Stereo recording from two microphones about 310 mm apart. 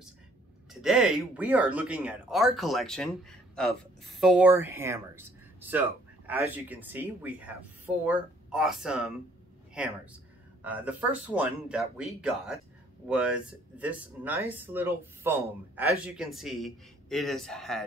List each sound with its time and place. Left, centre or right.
0.7 s speech: centre